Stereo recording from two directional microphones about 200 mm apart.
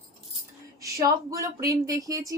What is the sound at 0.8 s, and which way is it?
A woman's voice, 15° right (ahead or behind).